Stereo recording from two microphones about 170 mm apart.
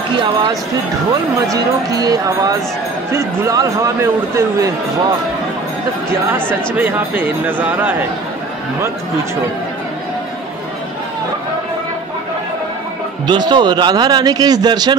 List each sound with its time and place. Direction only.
1.5 s a man's voice: 20° right (ahead or behind)
6.8 s a man's voice: 10° right (ahead or behind)
13.3 s speech: 25° right (ahead or behind)